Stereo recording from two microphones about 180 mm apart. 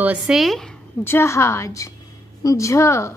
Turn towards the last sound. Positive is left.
turn(degrees=15)  # may be behind; listen again after turning